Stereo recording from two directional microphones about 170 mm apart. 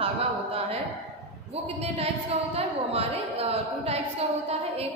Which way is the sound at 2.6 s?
35° right (ahead or behind).